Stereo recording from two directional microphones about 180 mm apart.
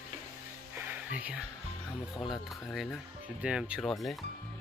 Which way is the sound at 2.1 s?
Centre (ahead or behind).